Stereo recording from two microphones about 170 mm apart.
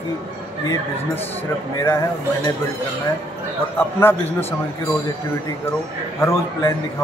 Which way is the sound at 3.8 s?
15° left (ahead or behind).